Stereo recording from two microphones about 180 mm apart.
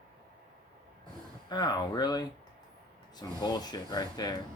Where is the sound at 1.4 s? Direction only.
25° left (ahead or behind).